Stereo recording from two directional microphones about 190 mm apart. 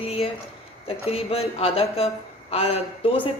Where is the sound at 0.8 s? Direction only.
30° left (ahead or behind).